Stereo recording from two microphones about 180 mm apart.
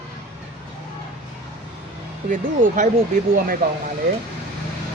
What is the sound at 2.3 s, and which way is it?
Speech, 45° right (ahead or behind).